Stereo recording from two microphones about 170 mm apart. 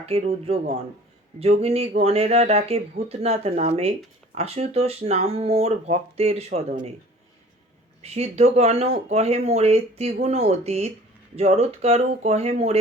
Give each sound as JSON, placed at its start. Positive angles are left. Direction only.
{"t": 0.0, "sound": "speech", "side_deg": -35}
{"t": 8.0, "sound": "speech", "side_deg": -40}